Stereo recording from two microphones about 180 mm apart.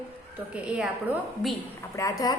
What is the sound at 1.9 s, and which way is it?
Speech, 20° left (ahead or behind).